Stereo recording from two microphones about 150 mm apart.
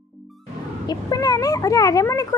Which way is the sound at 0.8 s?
25° left (ahead or behind).